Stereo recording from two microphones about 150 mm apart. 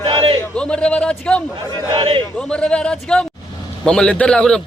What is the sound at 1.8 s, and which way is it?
Speech, 35° right (ahead or behind).